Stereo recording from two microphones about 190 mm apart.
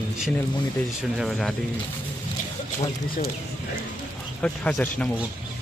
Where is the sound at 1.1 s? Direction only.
Centre (ahead or behind).